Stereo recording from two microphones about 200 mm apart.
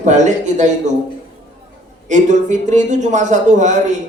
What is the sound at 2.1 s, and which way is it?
Speech, 35° right (ahead or behind).